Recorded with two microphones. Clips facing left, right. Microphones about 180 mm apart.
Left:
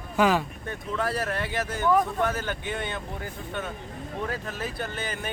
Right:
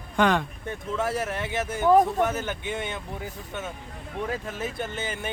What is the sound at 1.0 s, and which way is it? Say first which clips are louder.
Speech: left 1 dB; 20° right (ahead or behind).